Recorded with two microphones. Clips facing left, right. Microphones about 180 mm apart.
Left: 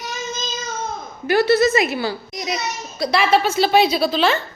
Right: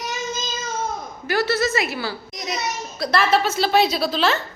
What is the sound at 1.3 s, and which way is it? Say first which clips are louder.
Speech: left 6 dB; 15° left (ahead or behind).